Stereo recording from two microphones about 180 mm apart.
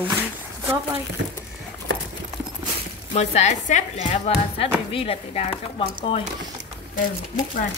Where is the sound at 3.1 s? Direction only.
40° left (ahead or behind).